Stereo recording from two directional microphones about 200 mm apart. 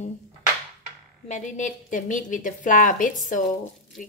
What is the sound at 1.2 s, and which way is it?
A woman's voice, 35° left (ahead or behind).